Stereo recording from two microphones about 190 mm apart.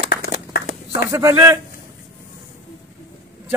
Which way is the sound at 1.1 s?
15° right (ahead or behind).